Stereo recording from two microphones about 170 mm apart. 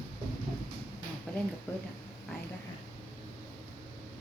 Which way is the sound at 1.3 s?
5° left (ahead or behind).